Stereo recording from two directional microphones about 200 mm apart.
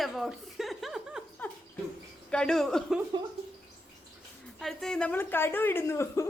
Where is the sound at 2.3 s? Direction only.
5° left (ahead or behind).